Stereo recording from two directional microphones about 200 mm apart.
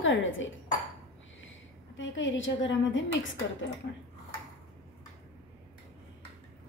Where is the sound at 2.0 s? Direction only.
70° left (ahead or behind).